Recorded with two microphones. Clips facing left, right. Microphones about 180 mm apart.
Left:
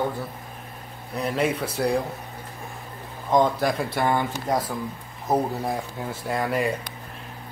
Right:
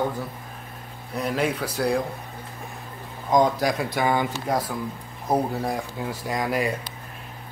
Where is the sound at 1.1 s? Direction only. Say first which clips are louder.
Left 1 dB; 5° right (ahead or behind).